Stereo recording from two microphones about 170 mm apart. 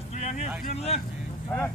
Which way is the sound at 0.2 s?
45° left (ahead or behind).